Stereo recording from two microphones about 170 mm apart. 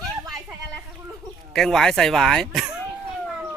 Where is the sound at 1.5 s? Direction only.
Centre (ahead or behind).